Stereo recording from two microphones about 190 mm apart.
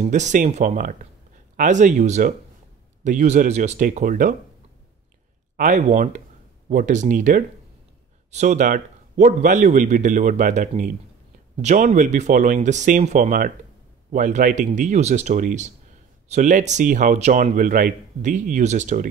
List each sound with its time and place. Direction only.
0.0 s a man's voice: 40° right (ahead or behind)
5.6 s a man's voice: 40° right (ahead or behind)